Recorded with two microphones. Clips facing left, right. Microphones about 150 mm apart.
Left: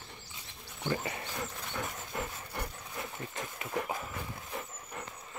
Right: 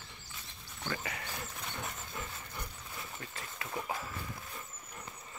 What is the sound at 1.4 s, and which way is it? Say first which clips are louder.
Dog: left 5 dB; 75° left (ahead or behind).